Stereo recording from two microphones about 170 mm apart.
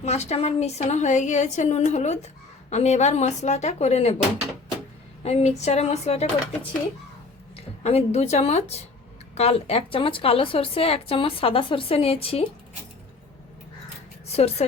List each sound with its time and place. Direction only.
0.0 s a woman's voice: 40° left (ahead or behind)
5.2 s a woman's voice: 40° left (ahead or behind)